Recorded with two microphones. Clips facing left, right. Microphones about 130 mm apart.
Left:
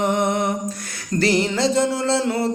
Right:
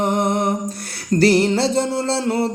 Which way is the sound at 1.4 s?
30° right (ahead or behind).